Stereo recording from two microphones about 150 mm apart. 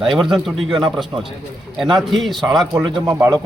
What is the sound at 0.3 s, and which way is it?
Speech, centre (ahead or behind).